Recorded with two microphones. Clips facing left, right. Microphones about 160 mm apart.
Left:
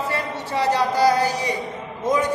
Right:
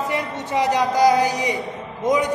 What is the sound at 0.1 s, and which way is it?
A woman's voice, 15° right (ahead or behind).